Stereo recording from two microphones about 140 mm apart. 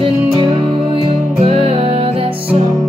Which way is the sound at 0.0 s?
35° right (ahead or behind).